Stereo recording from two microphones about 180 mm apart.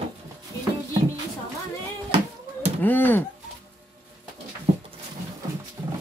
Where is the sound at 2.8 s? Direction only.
10° left (ahead or behind).